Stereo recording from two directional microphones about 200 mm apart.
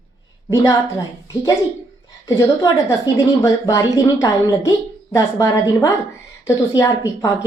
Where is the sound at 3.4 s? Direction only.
15° left (ahead or behind).